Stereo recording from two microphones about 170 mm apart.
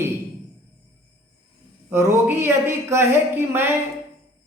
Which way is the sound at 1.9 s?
15° right (ahead or behind).